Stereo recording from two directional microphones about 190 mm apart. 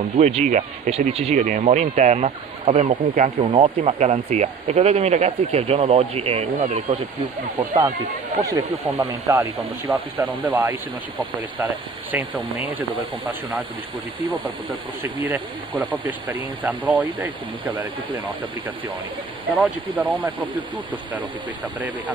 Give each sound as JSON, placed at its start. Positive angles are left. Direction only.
{"t": 0.2, "sound": "speech", "side_deg": -35}
{"t": 7.5, "sound": "speech", "side_deg": -20}
{"t": 15.2, "sound": "speech", "side_deg": -10}
{"t": 20.0, "sound": "speech", "side_deg": -10}